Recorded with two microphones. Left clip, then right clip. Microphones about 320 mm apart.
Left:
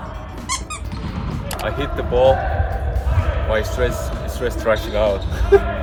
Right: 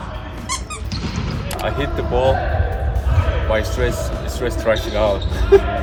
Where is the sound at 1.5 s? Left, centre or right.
Centre.